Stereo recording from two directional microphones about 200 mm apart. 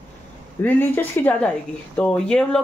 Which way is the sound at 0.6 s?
10° left (ahead or behind).